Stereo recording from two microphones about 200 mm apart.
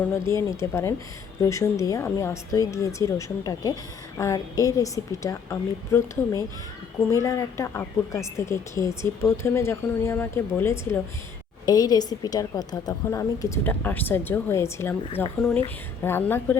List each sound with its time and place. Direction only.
0.5 s speech: 15° left (ahead or behind)